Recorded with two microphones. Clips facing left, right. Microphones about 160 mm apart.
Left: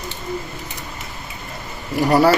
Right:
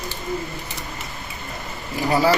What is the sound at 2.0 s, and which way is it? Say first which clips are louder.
Speech: left 4 dB; 65° left (ahead or behind).